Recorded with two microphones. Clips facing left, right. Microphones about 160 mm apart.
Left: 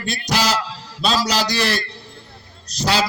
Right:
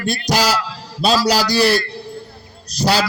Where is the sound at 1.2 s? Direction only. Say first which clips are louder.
Right 5 dB; 35° right (ahead or behind).